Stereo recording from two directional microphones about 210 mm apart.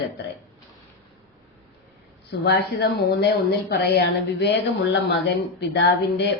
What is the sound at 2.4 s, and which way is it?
A woman's voice, 50° left (ahead or behind).